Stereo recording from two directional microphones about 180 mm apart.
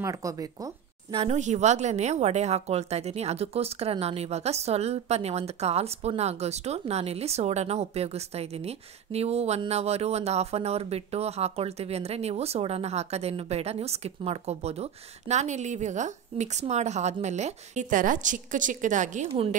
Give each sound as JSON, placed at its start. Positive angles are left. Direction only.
{"t": 0.0, "sound": "speech", "side_deg": -20}
{"t": 1.1, "sound": "a woman's voice", "side_deg": -40}